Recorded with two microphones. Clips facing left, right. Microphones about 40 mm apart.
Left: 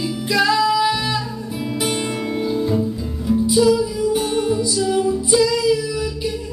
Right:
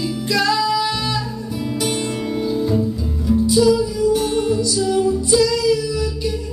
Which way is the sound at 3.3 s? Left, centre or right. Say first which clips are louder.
Right 1 dB; centre.